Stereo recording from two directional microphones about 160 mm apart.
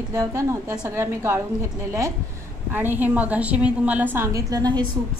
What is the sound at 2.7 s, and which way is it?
A woman's voice, 10° right (ahead or behind).